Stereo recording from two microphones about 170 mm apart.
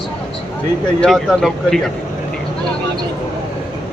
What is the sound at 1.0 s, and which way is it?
Speech, centre (ahead or behind).